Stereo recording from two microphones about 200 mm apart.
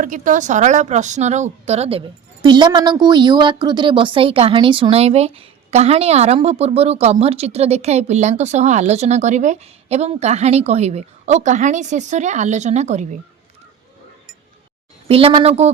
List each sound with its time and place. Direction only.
0.0 s a woman's voice: 40° right (ahead or behind)
15.0 s speech: 30° right (ahead or behind)